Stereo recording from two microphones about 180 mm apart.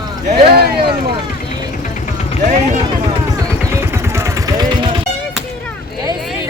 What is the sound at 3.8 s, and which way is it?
Vehicle, 15° right (ahead or behind).